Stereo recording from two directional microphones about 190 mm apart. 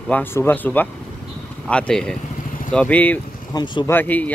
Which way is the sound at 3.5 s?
25° left (ahead or behind).